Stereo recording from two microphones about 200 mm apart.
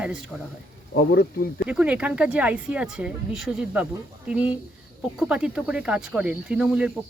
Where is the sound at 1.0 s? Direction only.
50° left (ahead or behind).